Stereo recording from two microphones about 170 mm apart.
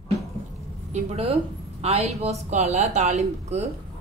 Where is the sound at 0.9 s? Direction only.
35° right (ahead or behind).